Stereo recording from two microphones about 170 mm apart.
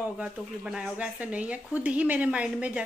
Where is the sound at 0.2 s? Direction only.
5° right (ahead or behind).